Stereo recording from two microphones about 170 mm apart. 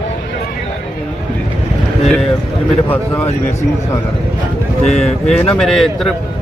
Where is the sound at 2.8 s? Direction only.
10° left (ahead or behind).